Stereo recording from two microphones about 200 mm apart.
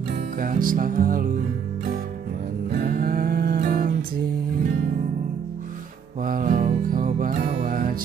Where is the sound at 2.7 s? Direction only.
50° right (ahead or behind).